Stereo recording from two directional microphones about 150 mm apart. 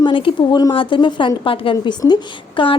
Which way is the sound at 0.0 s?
35° left (ahead or behind).